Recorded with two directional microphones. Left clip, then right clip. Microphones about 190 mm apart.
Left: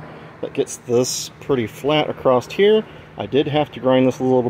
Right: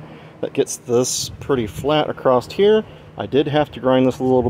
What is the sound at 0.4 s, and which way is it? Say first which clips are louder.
Speech: right 2 dB; 15° right (ahead or behind).